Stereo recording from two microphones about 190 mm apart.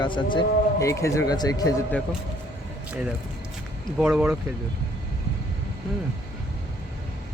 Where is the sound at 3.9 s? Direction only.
5° right (ahead or behind).